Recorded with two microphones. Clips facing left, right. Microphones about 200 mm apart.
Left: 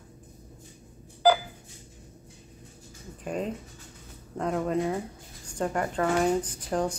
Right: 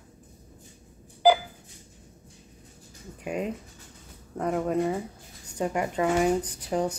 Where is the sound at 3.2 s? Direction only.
10° right (ahead or behind).